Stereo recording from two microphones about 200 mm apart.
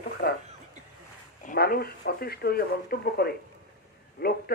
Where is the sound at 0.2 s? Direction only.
50° left (ahead or behind).